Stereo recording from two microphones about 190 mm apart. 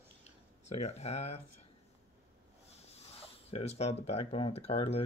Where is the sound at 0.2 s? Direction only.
35° left (ahead or behind).